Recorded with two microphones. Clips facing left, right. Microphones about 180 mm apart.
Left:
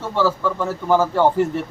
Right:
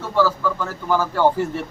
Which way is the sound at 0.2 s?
25° left (ahead or behind).